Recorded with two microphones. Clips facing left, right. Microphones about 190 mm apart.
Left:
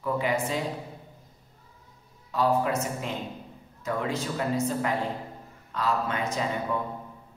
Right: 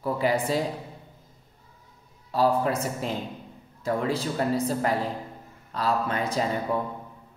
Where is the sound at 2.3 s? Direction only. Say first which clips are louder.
Right 2 dB; 30° right (ahead or behind).